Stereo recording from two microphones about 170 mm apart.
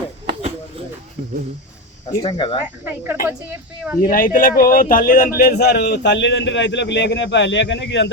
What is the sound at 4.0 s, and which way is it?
A man's voice, 55° left (ahead or behind).